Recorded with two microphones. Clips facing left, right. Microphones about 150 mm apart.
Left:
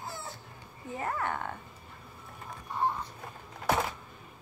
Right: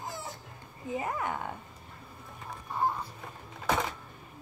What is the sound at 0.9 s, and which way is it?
Speech, 15° right (ahead or behind).